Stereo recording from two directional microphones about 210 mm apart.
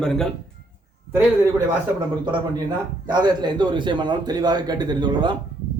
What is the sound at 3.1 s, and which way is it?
A man's voice, 20° right (ahead or behind).